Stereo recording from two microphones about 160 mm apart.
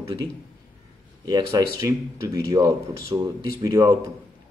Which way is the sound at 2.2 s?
20° right (ahead or behind).